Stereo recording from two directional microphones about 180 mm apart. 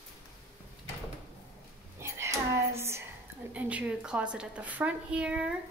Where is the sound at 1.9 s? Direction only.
15° right (ahead or behind).